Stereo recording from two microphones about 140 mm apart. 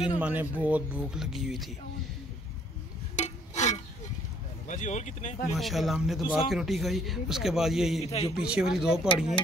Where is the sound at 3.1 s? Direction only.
55° left (ahead or behind).